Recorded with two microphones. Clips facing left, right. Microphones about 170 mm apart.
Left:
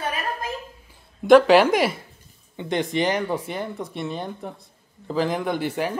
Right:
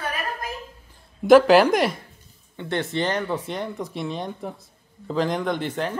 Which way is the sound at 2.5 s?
15° left (ahead or behind).